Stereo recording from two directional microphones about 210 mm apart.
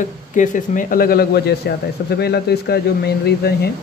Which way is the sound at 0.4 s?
40° left (ahead or behind).